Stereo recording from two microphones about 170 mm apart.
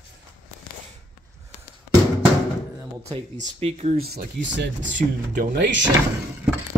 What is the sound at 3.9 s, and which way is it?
Speech, 60° right (ahead or behind).